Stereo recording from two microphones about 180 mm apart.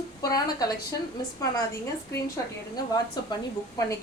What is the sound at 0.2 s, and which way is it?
Speech, 20° left (ahead or behind).